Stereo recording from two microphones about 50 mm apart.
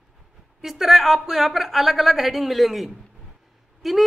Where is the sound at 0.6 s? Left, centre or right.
Centre.